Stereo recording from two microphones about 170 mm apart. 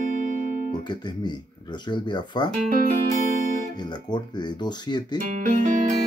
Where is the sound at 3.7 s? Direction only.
25° left (ahead or behind).